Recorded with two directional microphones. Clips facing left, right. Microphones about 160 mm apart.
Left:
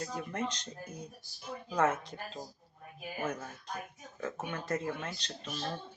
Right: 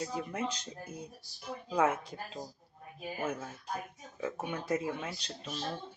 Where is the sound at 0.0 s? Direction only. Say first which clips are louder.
Right 1 dB; 5° right (ahead or behind).